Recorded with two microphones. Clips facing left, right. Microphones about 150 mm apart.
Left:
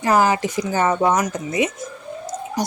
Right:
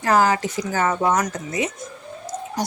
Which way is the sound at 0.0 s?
15° left (ahead or behind).